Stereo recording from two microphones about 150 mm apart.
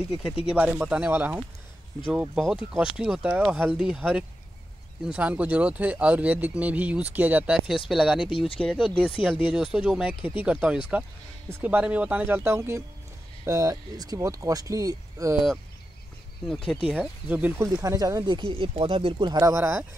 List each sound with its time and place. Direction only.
0.1 s speech: 5° right (ahead or behind)
8.3 s speech: 35° left (ahead or behind)
9.5 s speech: 5° right (ahead or behind); by 15.3 s 25° right (ahead or behind)
16.4 s speech: 5° left (ahead or behind)
16.8 s speech: 10° right (ahead or behind)